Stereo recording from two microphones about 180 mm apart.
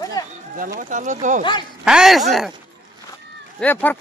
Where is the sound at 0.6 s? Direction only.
50° right (ahead or behind).